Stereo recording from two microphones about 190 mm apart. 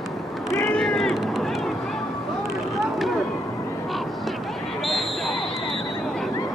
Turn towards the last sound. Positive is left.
turn(degrees=0)  # may be behind; listen again after turning